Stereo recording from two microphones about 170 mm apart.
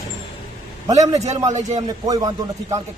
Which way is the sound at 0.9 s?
20° right (ahead or behind).